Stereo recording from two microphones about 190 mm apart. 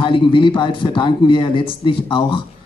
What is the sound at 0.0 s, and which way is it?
A man's voice, 25° left (ahead or behind).